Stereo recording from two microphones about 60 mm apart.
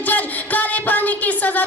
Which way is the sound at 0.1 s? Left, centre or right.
Left.